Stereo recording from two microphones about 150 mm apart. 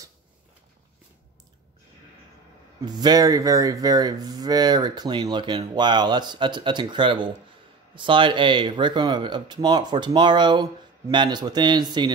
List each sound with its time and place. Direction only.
2.8 s speech: 30° right (ahead or behind)